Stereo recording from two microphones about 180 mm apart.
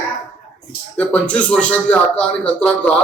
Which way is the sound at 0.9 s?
5° left (ahead or behind).